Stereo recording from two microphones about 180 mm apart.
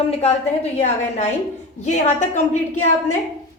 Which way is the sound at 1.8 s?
40° left (ahead or behind).